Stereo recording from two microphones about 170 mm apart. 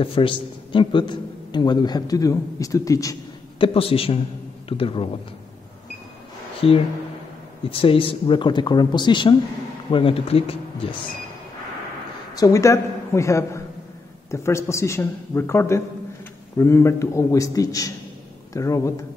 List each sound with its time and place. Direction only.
0.0 s a man's voice: 30° left (ahead or behind)
3.5 s speech: 30° left (ahead or behind)
6.6 s a man's voice: 35° left (ahead or behind)
12.4 s a man's voice: 20° left (ahead or behind)